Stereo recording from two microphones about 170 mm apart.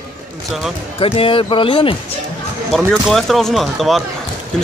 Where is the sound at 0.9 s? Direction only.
30° left (ahead or behind).